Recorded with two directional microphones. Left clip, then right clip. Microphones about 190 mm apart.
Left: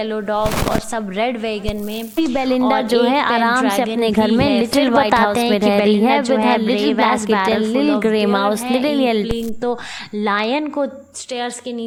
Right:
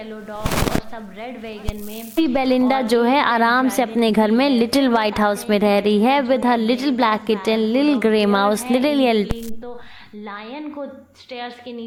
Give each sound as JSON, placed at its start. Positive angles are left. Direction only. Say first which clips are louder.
{"t": 0.4, "sound": "a woman's voice", "louder": "left 3 dB", "side_deg": 0}
{"t": 2.1, "sound": "a woman's voice", "louder": "even", "side_deg": 0}
{"t": 10.2, "sound": "a woman's voice", "louder": "left 15 dB", "side_deg": 60}